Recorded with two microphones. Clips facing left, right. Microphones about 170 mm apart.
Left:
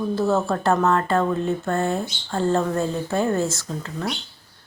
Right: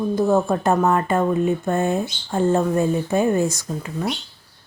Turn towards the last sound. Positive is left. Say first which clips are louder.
# right 3 dB
turn(degrees=-10)  # may be behind; listen again after turning